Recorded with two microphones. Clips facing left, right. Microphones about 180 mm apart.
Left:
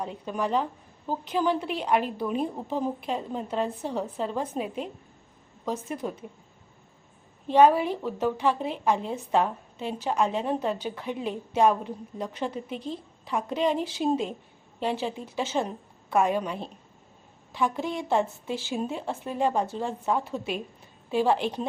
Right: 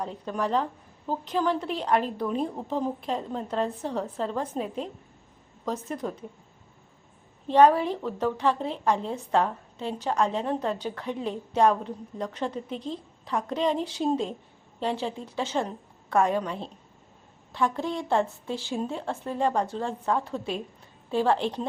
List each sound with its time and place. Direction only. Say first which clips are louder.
0.0 s a woman's voice: even; 5° left (ahead or behind)
7.4 s a woman's voice: even; 5° left (ahead or behind)
18.7 s a woman's voice: right 1 dB; 15° left (ahead or behind)
19.5 s a woman's voice: even; 5° left (ahead or behind)